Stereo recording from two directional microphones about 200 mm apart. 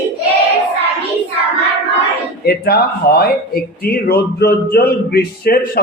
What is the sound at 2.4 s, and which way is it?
Speech, 50° left (ahead or behind).